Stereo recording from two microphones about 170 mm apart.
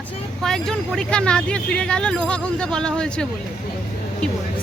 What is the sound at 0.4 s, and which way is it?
Speech, 5° left (ahead or behind).